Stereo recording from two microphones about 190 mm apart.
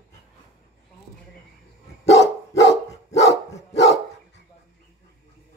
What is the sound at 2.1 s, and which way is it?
Dog, 70° left (ahead or behind).